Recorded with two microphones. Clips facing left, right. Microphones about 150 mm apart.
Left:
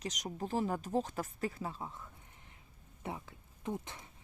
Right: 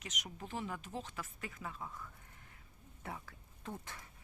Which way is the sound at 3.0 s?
20° left (ahead or behind).